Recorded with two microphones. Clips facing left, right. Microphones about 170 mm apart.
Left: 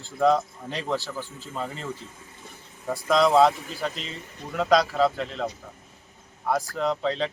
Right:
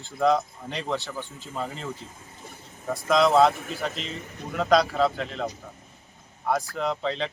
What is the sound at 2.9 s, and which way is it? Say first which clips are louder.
Speech: even; centre (ahead or behind).